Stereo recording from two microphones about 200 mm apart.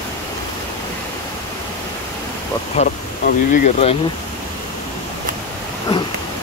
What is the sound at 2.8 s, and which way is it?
Speech, 35° left (ahead or behind).